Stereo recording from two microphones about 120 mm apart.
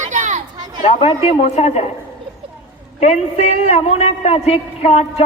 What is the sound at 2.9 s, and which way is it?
A man's voice, 70° left (ahead or behind).